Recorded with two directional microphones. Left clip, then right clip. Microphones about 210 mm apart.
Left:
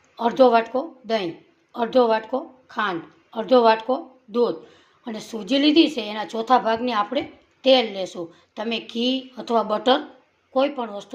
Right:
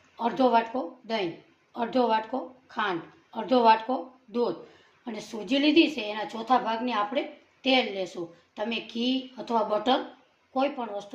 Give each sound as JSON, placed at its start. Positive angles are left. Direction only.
{"t": 0.2, "sound": "a woman's voice", "side_deg": 35}